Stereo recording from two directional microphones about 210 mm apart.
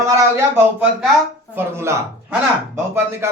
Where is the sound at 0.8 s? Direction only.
5° right (ahead or behind).